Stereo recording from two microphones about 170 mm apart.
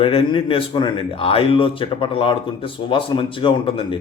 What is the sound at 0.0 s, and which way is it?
A man's voice, 30° left (ahead or behind).